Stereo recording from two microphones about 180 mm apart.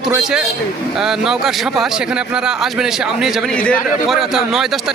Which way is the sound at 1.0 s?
5° right (ahead or behind).